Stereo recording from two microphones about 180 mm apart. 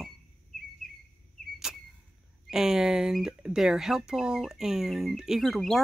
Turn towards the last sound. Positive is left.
turn(degrees=0)  # may be behind; listen again after turning